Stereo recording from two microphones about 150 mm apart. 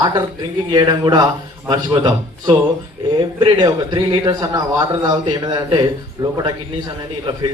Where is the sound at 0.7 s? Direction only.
30° right (ahead or behind).